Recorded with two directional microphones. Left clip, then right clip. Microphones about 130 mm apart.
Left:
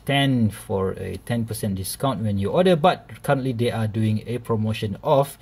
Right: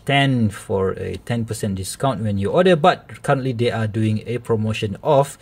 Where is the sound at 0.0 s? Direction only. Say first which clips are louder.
Right 3 dB; 25° right (ahead or behind).